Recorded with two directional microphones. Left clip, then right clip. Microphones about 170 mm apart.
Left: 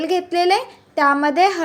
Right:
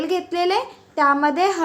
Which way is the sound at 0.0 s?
15° left (ahead or behind).